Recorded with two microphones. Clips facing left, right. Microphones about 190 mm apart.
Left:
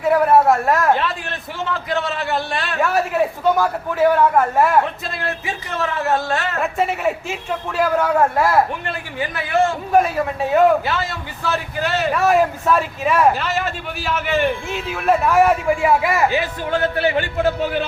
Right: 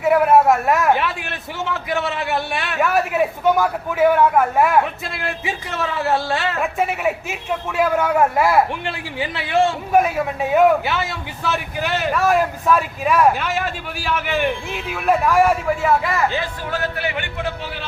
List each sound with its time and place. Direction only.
0.0 s a man's voice: centre (ahead or behind)
2.3 s speech: 5° right (ahead or behind)
6.6 s speech: centre (ahead or behind)
8.8 s speech: 20° right (ahead or behind)
9.9 s speech: 5° right (ahead or behind); by 17.8 s 45° left (ahead or behind)